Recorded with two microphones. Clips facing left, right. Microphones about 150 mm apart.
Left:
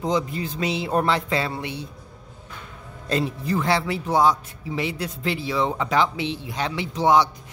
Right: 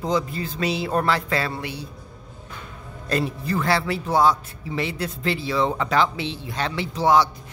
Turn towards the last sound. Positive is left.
turn(degrees=20)  # may be behind; listen again after turning